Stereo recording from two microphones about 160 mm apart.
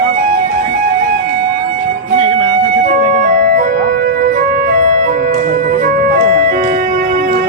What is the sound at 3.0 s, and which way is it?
Music, 55° right (ahead or behind).